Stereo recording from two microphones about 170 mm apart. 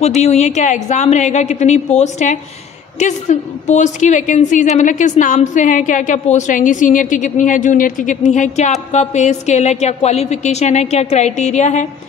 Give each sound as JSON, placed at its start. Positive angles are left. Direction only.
{"t": 0.2, "sound": "a woman's voice", "side_deg": 40}